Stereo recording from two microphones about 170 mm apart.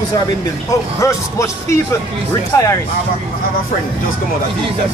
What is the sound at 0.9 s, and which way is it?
Speech, 15° left (ahead or behind).